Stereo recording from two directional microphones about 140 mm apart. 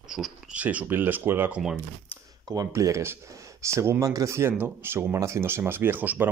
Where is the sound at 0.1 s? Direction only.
5° right (ahead or behind).